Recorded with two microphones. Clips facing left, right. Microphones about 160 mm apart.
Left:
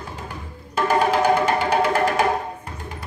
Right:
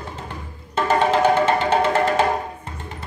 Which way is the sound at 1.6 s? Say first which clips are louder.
Right 1 dB; 10° left (ahead or behind).